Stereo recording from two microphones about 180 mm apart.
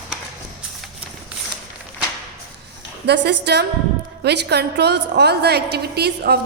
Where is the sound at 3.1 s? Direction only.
65° right (ahead or behind).